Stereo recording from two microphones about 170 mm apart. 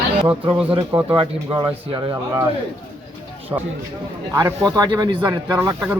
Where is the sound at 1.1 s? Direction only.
30° right (ahead or behind).